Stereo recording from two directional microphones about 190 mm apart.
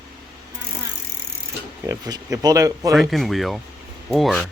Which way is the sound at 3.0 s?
Centre (ahead or behind).